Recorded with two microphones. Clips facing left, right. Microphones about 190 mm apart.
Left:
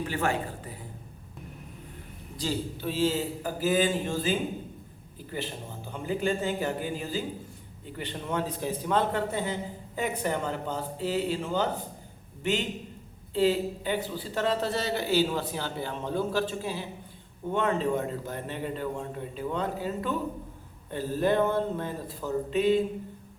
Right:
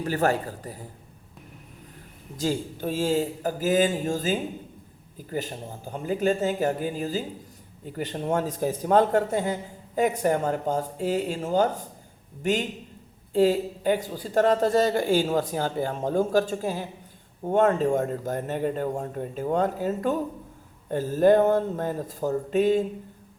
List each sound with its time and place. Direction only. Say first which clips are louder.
0.0 s speech: right 5 dB; 40° right (ahead or behind)
2.4 s a man's voice: right 4 dB; 45° right (ahead or behind)